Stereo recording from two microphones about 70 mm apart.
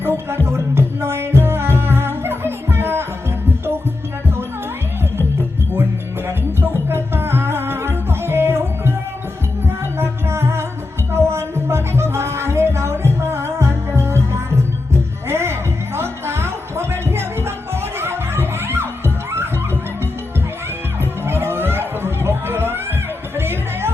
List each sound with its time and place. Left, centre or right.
0.0 s music: right
6.2 s music: right
10.0 s music: right
21.0 s chatter: right
23.3 s music: right